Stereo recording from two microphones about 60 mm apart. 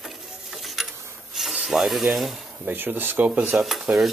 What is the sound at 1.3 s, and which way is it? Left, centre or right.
Rub, centre.